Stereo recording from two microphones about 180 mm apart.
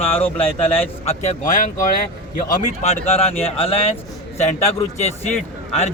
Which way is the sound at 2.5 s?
35° left (ahead or behind).